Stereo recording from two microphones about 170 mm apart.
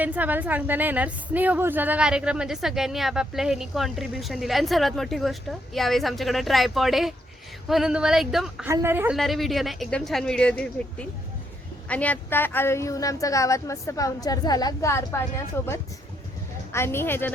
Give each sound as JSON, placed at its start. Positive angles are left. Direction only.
{"t": 0.0, "sound": "a woman's voice", "side_deg": -10}
{"t": 8.6, "sound": "a woman's voice", "side_deg": -15}
{"t": 9.1, "sound": "a woman's voice", "side_deg": 0}